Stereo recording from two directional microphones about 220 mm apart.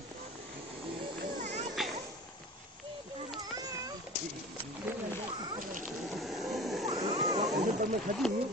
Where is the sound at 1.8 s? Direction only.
Centre (ahead or behind).